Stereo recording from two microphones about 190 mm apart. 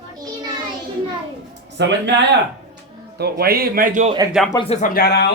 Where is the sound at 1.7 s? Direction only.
65° right (ahead or behind).